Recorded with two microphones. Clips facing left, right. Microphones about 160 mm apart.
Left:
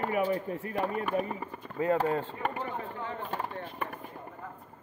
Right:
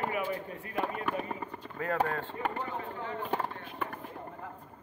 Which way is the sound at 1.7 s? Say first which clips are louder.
Left 4 dB; 20° left (ahead or behind).